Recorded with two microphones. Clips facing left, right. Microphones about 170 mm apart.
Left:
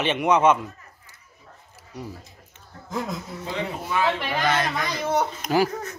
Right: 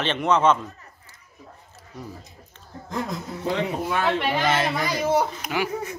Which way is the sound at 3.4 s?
55° right (ahead or behind).